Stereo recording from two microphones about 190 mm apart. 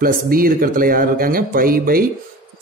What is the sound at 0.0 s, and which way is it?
Speech, 50° right (ahead or behind).